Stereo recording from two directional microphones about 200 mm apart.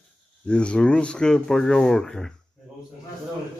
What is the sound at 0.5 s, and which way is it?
Speech, 5° left (ahead or behind).